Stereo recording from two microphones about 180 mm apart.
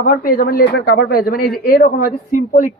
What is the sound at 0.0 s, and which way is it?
Speech, 55° left (ahead or behind).